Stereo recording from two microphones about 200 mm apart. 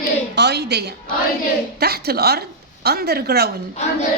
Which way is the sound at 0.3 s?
55° right (ahead or behind).